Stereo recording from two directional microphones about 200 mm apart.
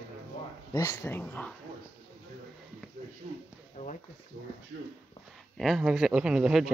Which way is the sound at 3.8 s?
40° left (ahead or behind).